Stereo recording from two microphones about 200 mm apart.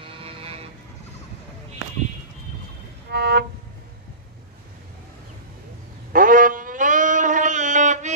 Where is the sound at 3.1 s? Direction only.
55° right (ahead or behind).